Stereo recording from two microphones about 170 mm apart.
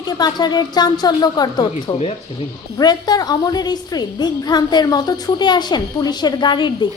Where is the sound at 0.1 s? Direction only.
25° left (ahead or behind).